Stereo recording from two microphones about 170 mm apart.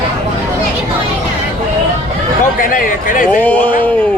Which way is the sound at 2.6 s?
55° left (ahead or behind).